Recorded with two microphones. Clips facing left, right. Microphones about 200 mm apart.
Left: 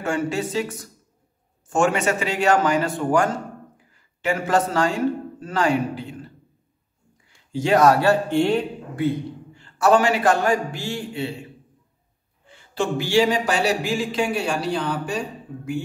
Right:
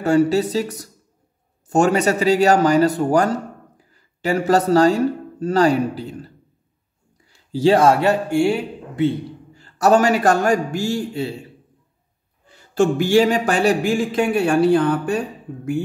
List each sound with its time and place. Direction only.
0.0 s a man's voice: 35° right (ahead or behind); by 8.6 s 10° right (ahead or behind)
9.0 s a man's voice: 25° right (ahead or behind)
9.5 s a man's voice: 40° right (ahead or behind)
12.4 s speech: 45° right (ahead or behind)